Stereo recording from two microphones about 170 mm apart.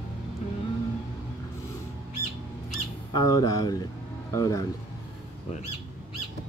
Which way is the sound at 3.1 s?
20° left (ahead or behind).